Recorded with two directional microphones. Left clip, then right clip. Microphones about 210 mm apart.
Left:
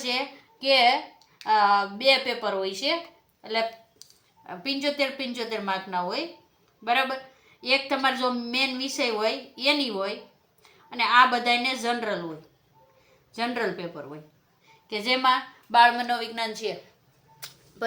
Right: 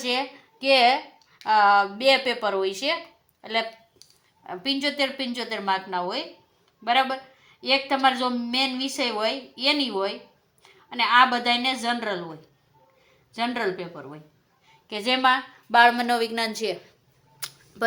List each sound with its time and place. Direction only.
0.6 s a woman's voice: 35° right (ahead or behind)
4.4 s a woman's voice: 35° right (ahead or behind)
13.3 s a woman's voice: 30° right (ahead or behind); by 16.7 s 50° right (ahead or behind)
17.4 s a sound: 45° right (ahead or behind)